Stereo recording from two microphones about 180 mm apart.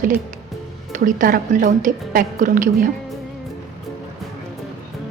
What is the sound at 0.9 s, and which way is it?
A woman's voice, 50° right (ahead or behind).